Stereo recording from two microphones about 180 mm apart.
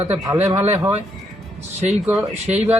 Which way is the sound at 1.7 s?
40° right (ahead or behind).